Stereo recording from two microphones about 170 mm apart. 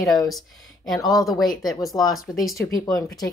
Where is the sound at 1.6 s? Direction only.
Centre (ahead or behind).